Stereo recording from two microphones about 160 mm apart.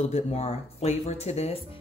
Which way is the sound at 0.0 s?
40° left (ahead or behind).